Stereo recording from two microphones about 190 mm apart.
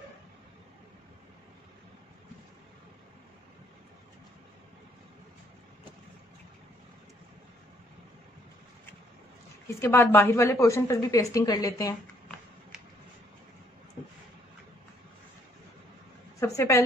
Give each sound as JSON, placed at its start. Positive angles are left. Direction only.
{"t": 9.7, "sound": "a woman's voice", "side_deg": 15}
{"t": 16.3, "sound": "a woman's voice", "side_deg": 15}